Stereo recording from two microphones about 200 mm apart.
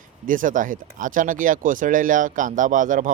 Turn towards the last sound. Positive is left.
turn(degrees=-40)  # may be behind; listen again after turning